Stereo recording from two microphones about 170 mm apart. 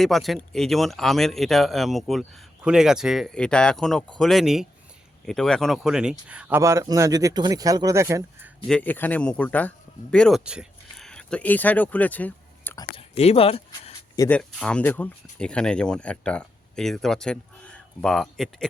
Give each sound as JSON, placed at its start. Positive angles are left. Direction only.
{"t": 0.0, "sound": "speech", "side_deg": 0}
{"t": 6.6, "sound": "speech", "side_deg": -20}
{"t": 8.6, "sound": "speech", "side_deg": 5}
{"t": 13.0, "sound": "a sound", "side_deg": 35}
{"t": 14.3, "sound": "speech", "side_deg": 5}